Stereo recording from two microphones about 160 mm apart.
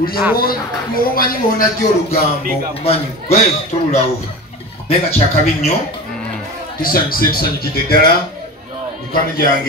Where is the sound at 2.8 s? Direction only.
40° left (ahead or behind).